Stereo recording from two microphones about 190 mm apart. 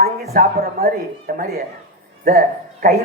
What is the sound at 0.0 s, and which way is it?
Speech, 50° right (ahead or behind).